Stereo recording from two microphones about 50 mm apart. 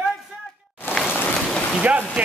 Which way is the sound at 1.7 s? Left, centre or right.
Right.